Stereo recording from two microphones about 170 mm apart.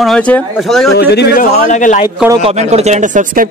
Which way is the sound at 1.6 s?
50° left (ahead or behind).